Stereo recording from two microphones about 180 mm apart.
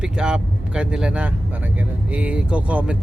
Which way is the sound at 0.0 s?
5° right (ahead or behind).